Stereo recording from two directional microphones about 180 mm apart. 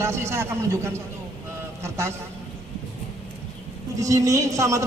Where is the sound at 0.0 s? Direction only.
15° right (ahead or behind).